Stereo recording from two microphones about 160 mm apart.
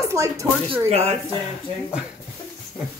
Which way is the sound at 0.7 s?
40° right (ahead or behind).